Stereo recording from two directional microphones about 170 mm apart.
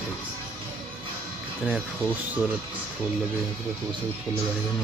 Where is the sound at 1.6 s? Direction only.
Centre (ahead or behind).